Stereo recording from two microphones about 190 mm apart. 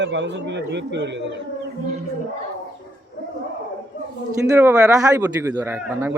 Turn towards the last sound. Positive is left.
turn(degrees=-10)  # may be behind; listen again after turning